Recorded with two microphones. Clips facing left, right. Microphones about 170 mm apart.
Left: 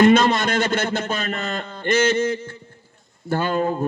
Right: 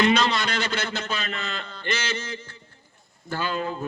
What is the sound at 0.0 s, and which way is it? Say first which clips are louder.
A man's voice: left 7 dB; 50° left (ahead or behind).